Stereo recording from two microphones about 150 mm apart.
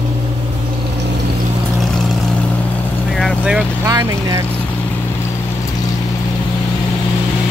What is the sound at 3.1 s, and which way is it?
Vehicle, centre (ahead or behind).